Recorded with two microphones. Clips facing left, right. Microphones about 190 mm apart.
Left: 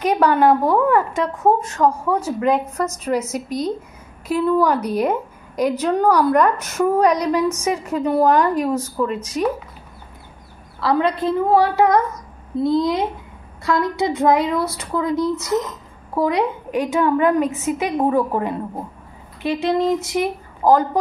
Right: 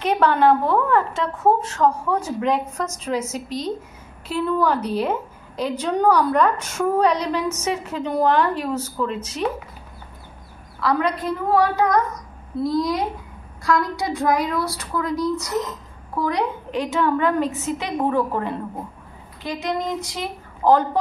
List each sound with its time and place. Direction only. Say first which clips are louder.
0.0 s a woman's voice: left 2 dB; 10° left (ahead or behind)
10.8 s a woman's voice: left 3 dB; 25° left (ahead or behind)
16.9 s a woman's voice: left 3 dB; 15° left (ahead or behind)
19.4 s a woman's voice: left 7 dB; 25° left (ahead or behind)
20.6 s a woman's voice: left 2 dB; 10° left (ahead or behind)